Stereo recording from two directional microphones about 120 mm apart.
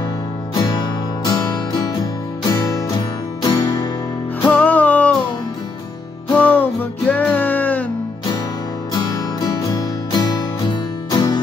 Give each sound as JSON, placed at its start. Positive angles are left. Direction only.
{"t": 0.6, "sound": "music", "side_deg": 40}
{"t": 4.5, "sound": "music", "side_deg": 15}
{"t": 6.3, "sound": "music", "side_deg": 15}
{"t": 8.9, "sound": "music", "side_deg": 35}